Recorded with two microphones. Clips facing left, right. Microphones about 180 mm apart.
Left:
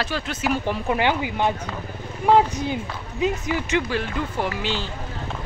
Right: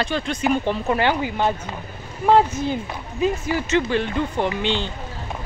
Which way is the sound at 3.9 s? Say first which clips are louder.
Right 4 dB; 5° left (ahead or behind).